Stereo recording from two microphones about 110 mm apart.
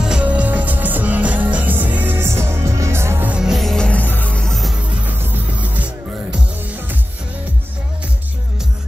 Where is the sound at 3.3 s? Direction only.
5° right (ahead or behind).